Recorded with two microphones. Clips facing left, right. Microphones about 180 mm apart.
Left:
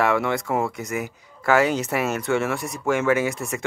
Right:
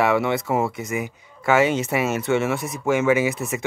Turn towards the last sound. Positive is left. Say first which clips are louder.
# right 2 dB
turn(degrees=0)  # may be behind; listen again after turning